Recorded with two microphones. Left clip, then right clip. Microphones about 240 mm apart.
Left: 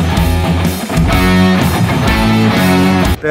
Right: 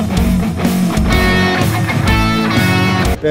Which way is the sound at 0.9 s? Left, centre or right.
Centre.